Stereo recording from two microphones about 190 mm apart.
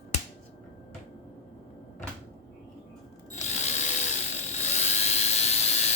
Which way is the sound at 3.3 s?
35° left (ahead or behind).